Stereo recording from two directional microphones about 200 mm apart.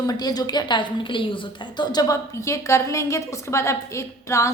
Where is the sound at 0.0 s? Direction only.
20° left (ahead or behind).